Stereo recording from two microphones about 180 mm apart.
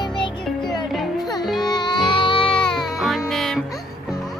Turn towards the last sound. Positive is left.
turn(degrees=0)  # may be behind; listen again after turning